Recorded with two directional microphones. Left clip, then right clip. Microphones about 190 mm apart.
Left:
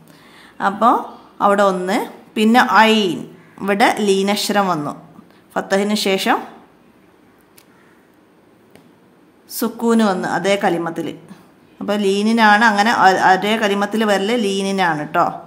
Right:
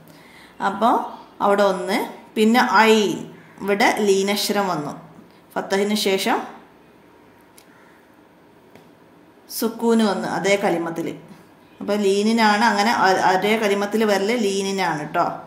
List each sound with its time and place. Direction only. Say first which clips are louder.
0.1 s a woman's voice: left 2 dB; 25° left (ahead or behind)
9.5 s a woman's voice: left 2 dB; 35° left (ahead or behind)